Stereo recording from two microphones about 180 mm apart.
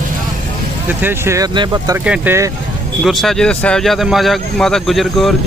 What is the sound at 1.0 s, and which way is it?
Speech, 15° right (ahead or behind).